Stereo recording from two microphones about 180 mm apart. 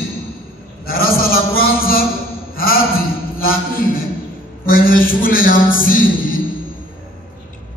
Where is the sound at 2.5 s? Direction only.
55° left (ahead or behind).